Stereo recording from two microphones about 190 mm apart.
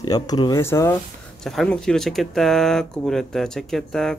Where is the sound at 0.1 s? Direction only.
20° left (ahead or behind).